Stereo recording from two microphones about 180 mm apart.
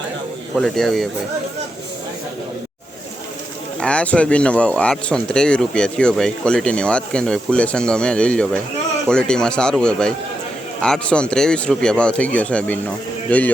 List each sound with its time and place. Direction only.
0.5 s speech: centre (ahead or behind)
3.8 s speech: 5° left (ahead or behind)